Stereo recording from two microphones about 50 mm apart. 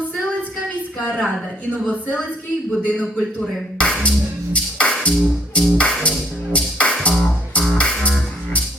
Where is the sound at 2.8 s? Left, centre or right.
Left.